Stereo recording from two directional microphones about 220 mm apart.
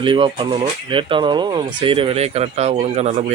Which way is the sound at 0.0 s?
25° right (ahead or behind).